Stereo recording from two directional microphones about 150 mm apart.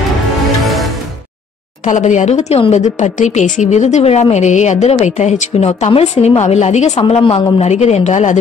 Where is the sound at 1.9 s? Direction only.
55° left (ahead or behind).